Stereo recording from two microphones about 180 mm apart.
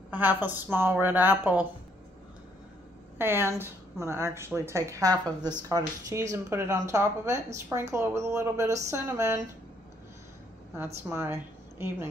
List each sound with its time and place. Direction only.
0.1 s speech: 10° right (ahead or behind)
3.2 s speech: 10° right (ahead or behind)
11.1 s speech: 10° right (ahead or behind)